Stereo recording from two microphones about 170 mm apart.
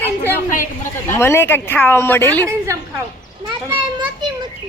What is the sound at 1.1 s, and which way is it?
Speech, 15° left (ahead or behind).